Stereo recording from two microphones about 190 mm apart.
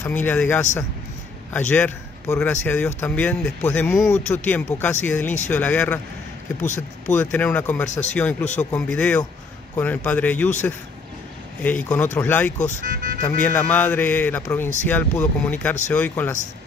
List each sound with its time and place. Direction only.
0.0 s speech: 10° left (ahead or behind)
6.6 s speech: 40° left (ahead or behind)
7.2 s speech: 10° left (ahead or behind)
11.6 s speech: 5° left (ahead or behind)
12.5 s speech: 40° left (ahead or behind)
12.8 s speech: 45° right (ahead or behind)
13.4 s speech: 10° left (ahead or behind)